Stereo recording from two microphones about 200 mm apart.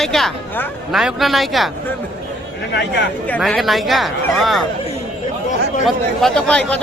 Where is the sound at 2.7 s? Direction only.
60° left (ahead or behind).